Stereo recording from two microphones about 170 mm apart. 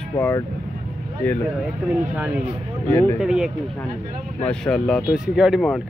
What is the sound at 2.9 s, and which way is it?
Speech, 15° left (ahead or behind).